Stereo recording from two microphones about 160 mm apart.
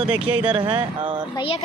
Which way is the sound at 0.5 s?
30° right (ahead or behind).